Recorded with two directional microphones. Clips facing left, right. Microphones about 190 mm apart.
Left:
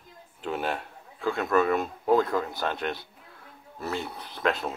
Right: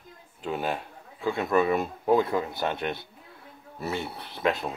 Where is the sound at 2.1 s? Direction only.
20° right (ahead or behind).